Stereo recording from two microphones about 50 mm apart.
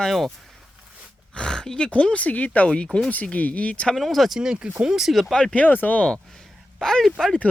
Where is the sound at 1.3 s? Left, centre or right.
Centre.